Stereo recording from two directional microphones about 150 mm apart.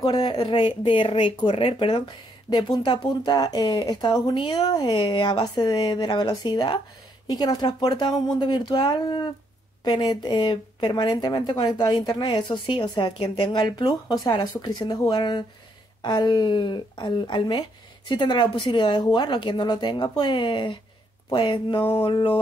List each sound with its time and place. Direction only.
0.0 s speech: 25° left (ahead or behind)